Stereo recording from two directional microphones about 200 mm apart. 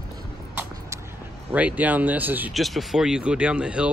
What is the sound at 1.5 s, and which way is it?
Speech, 10° right (ahead or behind).